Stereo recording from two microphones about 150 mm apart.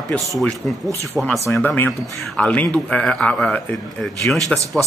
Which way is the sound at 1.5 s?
15° left (ahead or behind).